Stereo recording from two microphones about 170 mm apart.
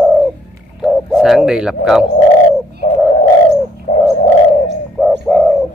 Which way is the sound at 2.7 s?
50° left (ahead or behind).